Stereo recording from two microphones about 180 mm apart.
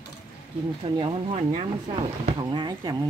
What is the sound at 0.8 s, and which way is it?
Speech, 30° right (ahead or behind).